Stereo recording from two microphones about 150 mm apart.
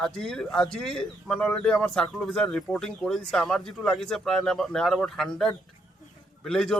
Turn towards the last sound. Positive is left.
turn(degrees=5)  # may be behind; listen again after turning